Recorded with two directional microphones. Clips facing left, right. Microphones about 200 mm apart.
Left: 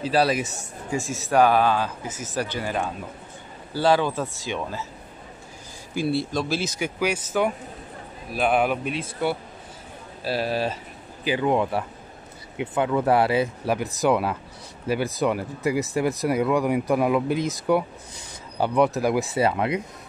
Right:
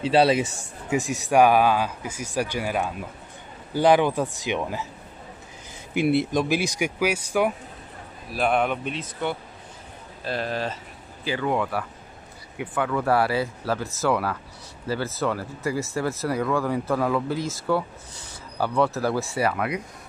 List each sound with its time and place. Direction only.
0.0 s speech: 25° right (ahead or behind)
0.9 s speech: 15° right (ahead or behind)
5.9 s speech: 20° right (ahead or behind); by 19.8 s 25° left (ahead or behind)